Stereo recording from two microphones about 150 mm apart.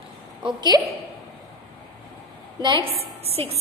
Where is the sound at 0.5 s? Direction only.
30° right (ahead or behind).